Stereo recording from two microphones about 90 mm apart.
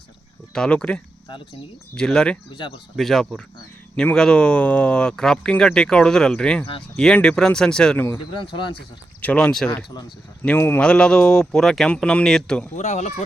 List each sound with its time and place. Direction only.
0.5 s speech: 10° left (ahead or behind)
2.5 s speech: 65° left (ahead or behind)
2.9 s speech: centre (ahead or behind)
8.3 s speech: 65° left (ahead or behind)
9.2 s speech: 15° left (ahead or behind)
10.8 s speech: 10° left (ahead or behind)